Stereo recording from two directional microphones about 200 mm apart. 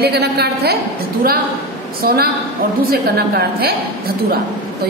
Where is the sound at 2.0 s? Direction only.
50° right (ahead or behind).